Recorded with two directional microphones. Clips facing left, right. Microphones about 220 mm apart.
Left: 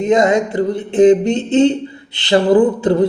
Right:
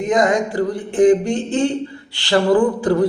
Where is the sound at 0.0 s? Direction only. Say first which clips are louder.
Left 4 dB; 25° left (ahead or behind).